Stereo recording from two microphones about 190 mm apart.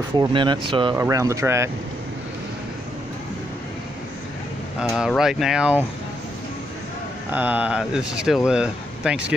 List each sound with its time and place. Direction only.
0.2 s speech: 25° right (ahead or behind)
4.7 s speech: 5° right (ahead or behind)
7.2 s speech: 10° right (ahead or behind)